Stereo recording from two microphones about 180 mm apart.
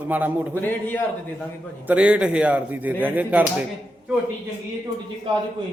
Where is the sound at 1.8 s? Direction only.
5° right (ahead or behind).